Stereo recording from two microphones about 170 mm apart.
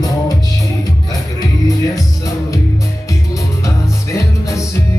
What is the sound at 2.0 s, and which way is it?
Music, 20° left (ahead or behind).